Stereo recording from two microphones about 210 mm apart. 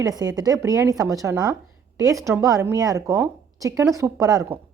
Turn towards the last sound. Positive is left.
turn(degrees=-15)  # may be behind; listen again after turning